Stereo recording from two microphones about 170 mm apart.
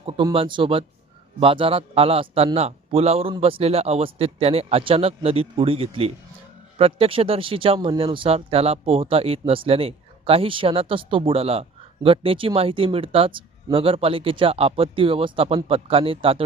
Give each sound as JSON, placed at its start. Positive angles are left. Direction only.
{"t": 0.0, "sound": "speech", "side_deg": -30}